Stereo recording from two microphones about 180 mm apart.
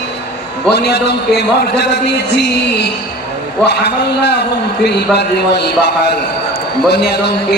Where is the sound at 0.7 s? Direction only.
70° left (ahead or behind).